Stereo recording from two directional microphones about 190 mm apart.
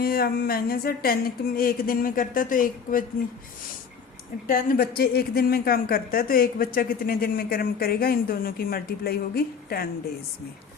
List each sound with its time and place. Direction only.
0.0 s speech: 50° left (ahead or behind)
4.4 s speech: 50° left (ahead or behind)